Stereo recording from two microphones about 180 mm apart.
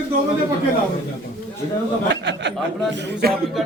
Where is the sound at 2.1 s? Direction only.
75° right (ahead or behind).